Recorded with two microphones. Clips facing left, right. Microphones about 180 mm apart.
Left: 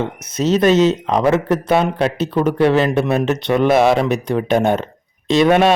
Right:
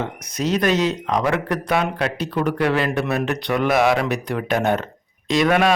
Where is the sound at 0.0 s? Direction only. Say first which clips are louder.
Left 5 dB; 25° left (ahead or behind).